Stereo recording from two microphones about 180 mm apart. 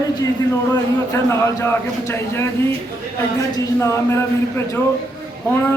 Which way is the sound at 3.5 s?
15° left (ahead or behind).